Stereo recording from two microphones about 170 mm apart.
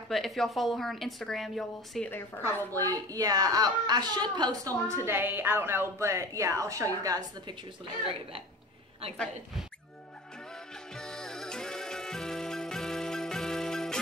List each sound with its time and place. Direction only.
0.1 s a woman's voice: centre (ahead or behind)
2.0 s a woman's voice: 10° left (ahead or behind)
2.4 s a woman's voice: 20° right (ahead or behind)
9.1 s a woman's voice: 5° left (ahead or behind)
11.0 s music: 5° left (ahead or behind)